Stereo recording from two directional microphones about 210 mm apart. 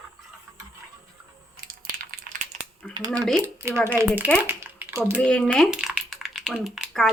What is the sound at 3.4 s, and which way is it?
Speech, 10° right (ahead or behind).